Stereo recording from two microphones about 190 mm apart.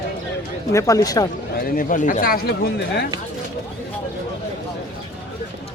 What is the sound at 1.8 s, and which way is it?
A man's voice, 45° left (ahead or behind).